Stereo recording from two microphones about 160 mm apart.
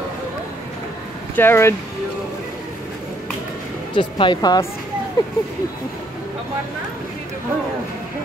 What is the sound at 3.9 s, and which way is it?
Speech, 30° left (ahead or behind).